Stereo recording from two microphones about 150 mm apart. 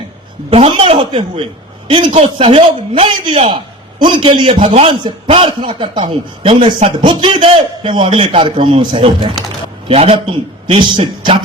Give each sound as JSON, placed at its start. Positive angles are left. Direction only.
{"t": 0.5, "sound": "a man's voice", "side_deg": -40}